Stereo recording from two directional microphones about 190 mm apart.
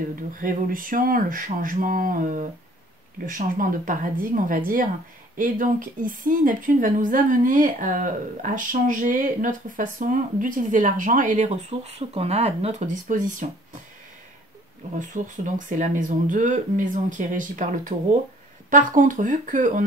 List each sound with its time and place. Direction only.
0.1 s a woman's voice: 45° right (ahead or behind)
15.0 s a woman's voice: 45° right (ahead or behind)